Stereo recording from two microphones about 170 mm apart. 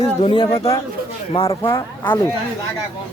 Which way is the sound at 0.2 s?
35° left (ahead or behind).